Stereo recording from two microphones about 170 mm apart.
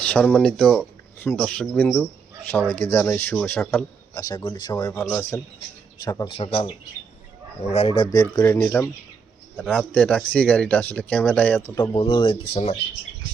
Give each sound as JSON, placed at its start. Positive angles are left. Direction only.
{"t": 0.1, "sound": "speech", "side_deg": 10}
{"t": 1.2, "sound": "speech", "side_deg": 15}
{"t": 4.9, "sound": "speech", "side_deg": 10}
{"t": 6.2, "sound": "speech", "side_deg": 35}
{"t": 7.7, "sound": "speech", "side_deg": 35}
{"t": 8.5, "sound": "speech", "side_deg": 10}
{"t": 11.8, "sound": "speech", "side_deg": 30}